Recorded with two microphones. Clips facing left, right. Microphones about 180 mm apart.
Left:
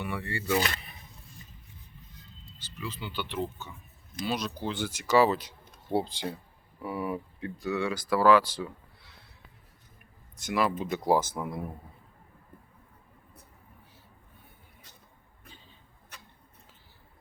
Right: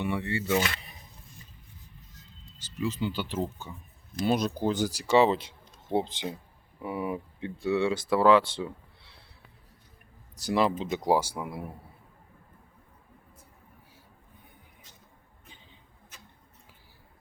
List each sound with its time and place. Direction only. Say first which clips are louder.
0.0 s speech: right 4 dB; 25° right (ahead or behind)
2.8 s speech: right 7 dB; 40° right (ahead or behind)
10.3 s speech: right 2 dB; 30° right (ahead or behind); by 11.7 s 5° right (ahead or behind)
16.1 s a sound: left 2 dB; 65° left (ahead or behind)